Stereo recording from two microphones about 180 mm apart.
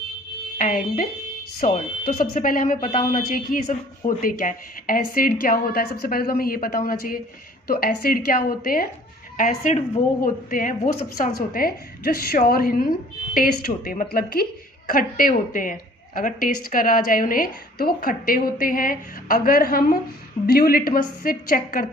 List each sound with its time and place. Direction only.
0.6 s a woman's voice: 45° left (ahead or behind)
9.4 s speech: 40° left (ahead or behind)
10.2 s a woman's voice: 50° left (ahead or behind)